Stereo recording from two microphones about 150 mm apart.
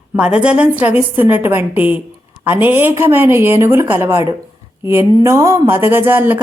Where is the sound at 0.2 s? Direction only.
5° right (ahead or behind).